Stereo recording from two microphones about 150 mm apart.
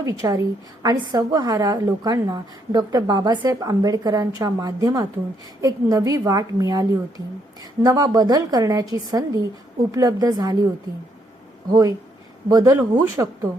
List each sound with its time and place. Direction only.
0.0 s a woman's voice: 20° right (ahead or behind)
11.7 s a woman's voice: 25° right (ahead or behind)